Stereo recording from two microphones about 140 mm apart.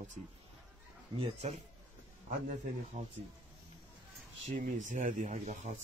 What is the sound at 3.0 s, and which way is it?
Speech, 60° right (ahead or behind).